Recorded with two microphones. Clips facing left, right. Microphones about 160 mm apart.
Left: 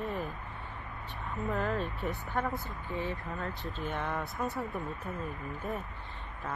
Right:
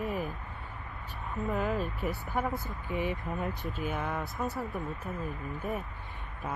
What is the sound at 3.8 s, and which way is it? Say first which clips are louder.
Speech: even; 5° right (ahead or behind).